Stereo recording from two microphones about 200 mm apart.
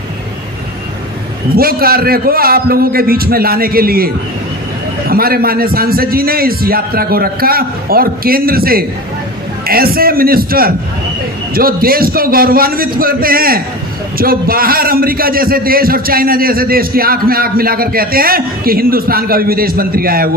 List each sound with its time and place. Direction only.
1.5 s a man's voice: 50° right (ahead or behind)